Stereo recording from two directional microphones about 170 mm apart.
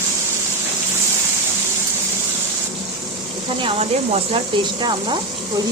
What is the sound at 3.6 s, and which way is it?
Speech, 35° right (ahead or behind).